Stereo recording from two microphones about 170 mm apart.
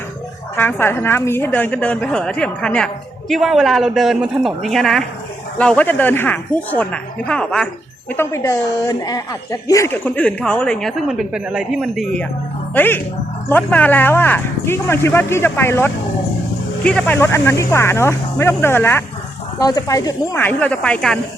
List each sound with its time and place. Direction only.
0.5 s a woman's voice: 10° left (ahead or behind)
8.1 s speech: 15° left (ahead or behind)
20.4 s speech: 10° left (ahead or behind)